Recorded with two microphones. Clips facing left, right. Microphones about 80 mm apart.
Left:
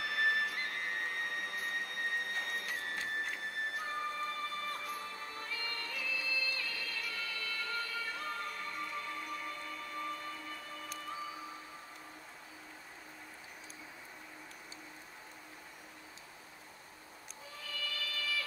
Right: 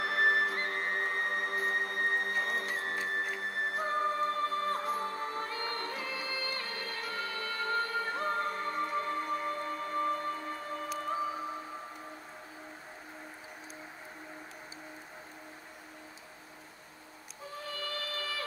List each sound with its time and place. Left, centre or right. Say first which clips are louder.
0.0 s music: right 5 dB; right
17.5 s music: right 5 dB; right